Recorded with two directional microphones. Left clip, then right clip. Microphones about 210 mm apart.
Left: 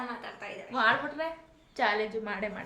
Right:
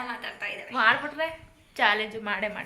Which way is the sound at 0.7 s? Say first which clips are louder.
Right 3 dB; 5° left (ahead or behind).